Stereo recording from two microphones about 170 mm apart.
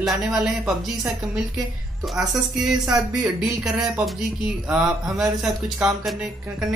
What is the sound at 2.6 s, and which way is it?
A woman's voice, 5° right (ahead or behind).